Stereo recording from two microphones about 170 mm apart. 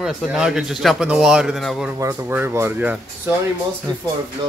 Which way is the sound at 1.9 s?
20° right (ahead or behind).